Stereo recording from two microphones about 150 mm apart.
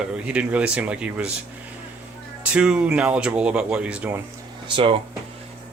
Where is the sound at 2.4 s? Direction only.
5° right (ahead or behind).